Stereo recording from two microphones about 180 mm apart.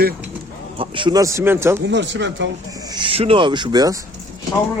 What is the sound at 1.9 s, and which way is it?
Speech, 85° right.